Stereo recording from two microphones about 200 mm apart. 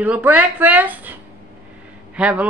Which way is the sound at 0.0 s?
10° right (ahead or behind).